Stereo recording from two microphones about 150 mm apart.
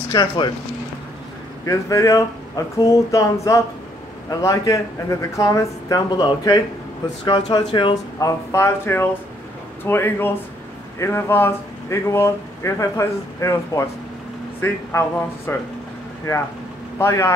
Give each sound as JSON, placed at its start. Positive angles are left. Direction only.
{"t": 0.1, "sound": "speech", "side_deg": 30}
{"t": 1.7, "sound": "speech", "side_deg": 20}
{"t": 17.0, "sound": "speech", "side_deg": 20}